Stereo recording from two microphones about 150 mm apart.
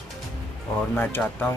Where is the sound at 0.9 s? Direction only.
10° left (ahead or behind).